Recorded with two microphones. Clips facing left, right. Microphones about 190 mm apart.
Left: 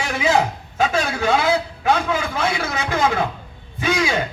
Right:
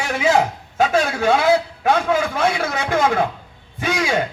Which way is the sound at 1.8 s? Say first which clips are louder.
Right 2 dB; 55° right (ahead or behind).